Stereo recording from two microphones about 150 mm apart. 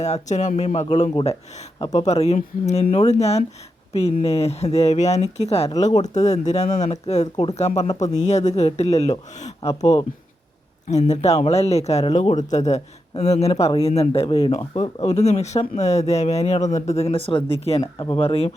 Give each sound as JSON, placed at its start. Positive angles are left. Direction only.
{"t": 0.0, "sound": "speech", "side_deg": 50}
{"t": 9.6, "sound": "speech", "side_deg": 25}
{"t": 10.8, "sound": "speech", "side_deg": 50}
{"t": 15.0, "sound": "speech", "side_deg": 45}